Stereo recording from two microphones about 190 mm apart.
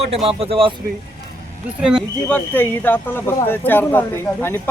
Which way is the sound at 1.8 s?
5° right (ahead or behind).